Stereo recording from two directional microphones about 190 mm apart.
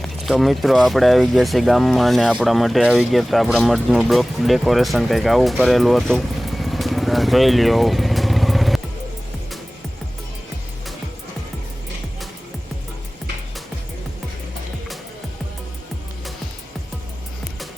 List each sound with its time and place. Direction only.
0.0 s speech: centre (ahead or behind)